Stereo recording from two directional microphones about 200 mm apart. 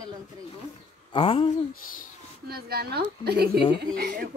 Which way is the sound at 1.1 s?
25° left (ahead or behind).